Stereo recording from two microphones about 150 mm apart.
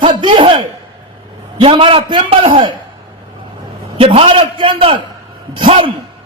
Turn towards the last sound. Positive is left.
turn(degrees=-35)  # may be behind; listen again after turning